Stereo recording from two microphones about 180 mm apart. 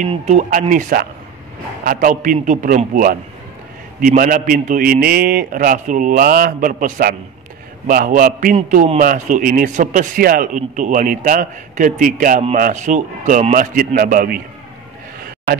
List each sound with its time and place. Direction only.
0.0 s a man's voice: 40° right (ahead or behind)